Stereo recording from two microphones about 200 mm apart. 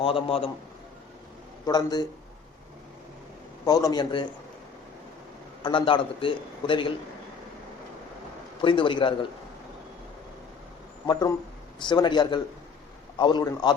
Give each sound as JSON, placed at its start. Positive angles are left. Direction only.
{"t": 0.0, "sound": "a man's voice", "side_deg": 30}
{"t": 1.6, "sound": "a man's voice", "side_deg": 20}
{"t": 3.7, "sound": "a man's voice", "side_deg": 20}
{"t": 5.6, "sound": "a man's voice", "side_deg": 25}
{"t": 8.6, "sound": "a man's voice", "side_deg": 25}
{"t": 11.0, "sound": "a man's voice", "side_deg": 20}